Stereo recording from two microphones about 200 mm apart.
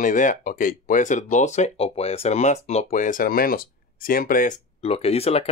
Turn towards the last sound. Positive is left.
turn(degrees=30)  # may be behind; listen again after turning